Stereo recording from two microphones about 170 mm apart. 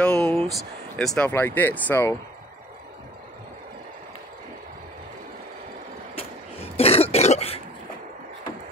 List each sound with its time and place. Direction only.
0.0 s a sound: 5° left (ahead or behind)
0.5 s speech: centre (ahead or behind)
6.1 s cough: 35° left (ahead or behind)